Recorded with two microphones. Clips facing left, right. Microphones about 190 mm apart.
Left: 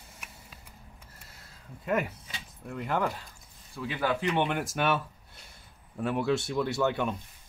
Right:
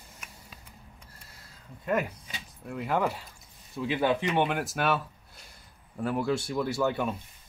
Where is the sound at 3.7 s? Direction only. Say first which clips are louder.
Right 4 dB; 25° right (ahead or behind).